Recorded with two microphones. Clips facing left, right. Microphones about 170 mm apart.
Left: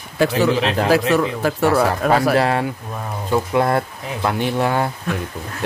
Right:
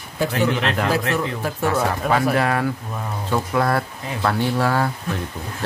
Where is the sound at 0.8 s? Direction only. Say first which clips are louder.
Left 5 dB; 85° left.